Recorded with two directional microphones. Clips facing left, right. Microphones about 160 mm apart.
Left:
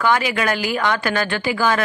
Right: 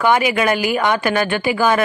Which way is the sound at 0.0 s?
15° right (ahead or behind).